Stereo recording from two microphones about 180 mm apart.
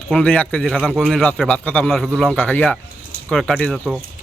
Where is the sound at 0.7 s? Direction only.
5° right (ahead or behind).